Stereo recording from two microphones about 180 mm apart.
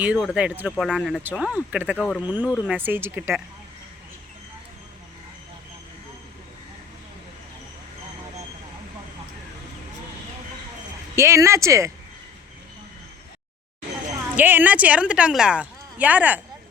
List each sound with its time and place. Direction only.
0.0 s speech: 5° right (ahead or behind)
2.0 s speech: 5° left (ahead or behind)
2.2 s speech: 10° right (ahead or behind)
11.1 s speech: 15° right (ahead or behind)
14.3 s speech: 10° right (ahead or behind)